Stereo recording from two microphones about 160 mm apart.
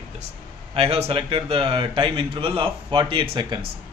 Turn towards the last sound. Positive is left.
turn(degrees=-35)  # may be behind; listen again after turning